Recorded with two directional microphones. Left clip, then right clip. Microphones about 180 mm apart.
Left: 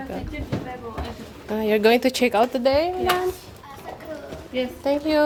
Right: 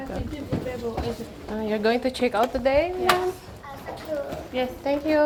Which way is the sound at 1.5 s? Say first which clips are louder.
Left 6 dB; 55° left (ahead or behind).